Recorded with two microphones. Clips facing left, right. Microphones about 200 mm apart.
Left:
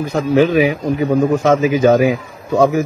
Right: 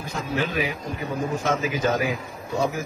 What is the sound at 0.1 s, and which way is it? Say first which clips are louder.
A man's voice: left 13 dB; 90° left.